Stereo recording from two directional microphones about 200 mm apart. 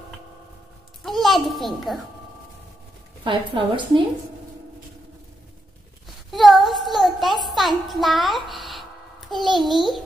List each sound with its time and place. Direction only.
1.0 s a child's voice: centre (ahead or behind)
3.3 s a woman's voice: 25° right (ahead or behind)
6.3 s child singing: centre (ahead or behind)
7.4 s a child's voice: centre (ahead or behind)